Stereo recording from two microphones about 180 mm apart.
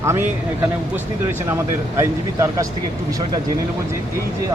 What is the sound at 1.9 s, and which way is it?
Speech, 15° right (ahead or behind).